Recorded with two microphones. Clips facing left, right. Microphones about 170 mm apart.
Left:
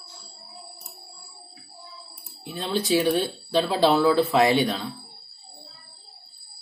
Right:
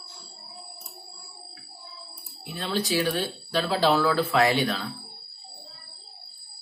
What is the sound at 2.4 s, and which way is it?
Speech, 30° left (ahead or behind).